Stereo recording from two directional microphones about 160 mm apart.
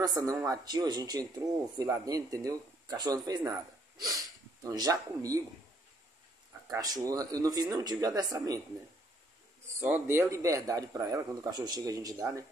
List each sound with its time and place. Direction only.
0.0 s speech: 25° right (ahead or behind)
6.7 s speech: 20° right (ahead or behind)
9.8 s speech: 15° right (ahead or behind)